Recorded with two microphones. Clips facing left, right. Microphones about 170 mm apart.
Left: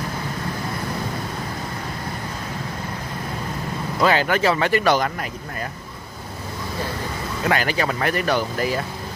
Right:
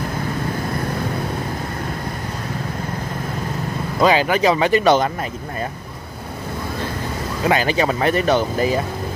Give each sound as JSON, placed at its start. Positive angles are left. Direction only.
{"t": 4.0, "sound": "speech", "side_deg": -15}
{"t": 7.4, "sound": "speech", "side_deg": -20}